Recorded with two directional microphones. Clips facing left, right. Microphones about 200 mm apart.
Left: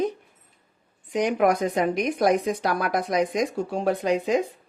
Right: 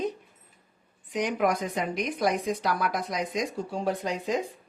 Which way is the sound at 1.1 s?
50° left (ahead or behind).